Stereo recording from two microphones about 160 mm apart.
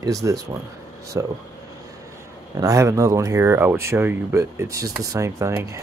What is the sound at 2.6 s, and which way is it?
Speech, 20° right (ahead or behind).